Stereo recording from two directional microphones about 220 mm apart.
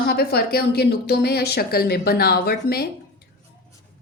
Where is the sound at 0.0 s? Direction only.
45° left (ahead or behind).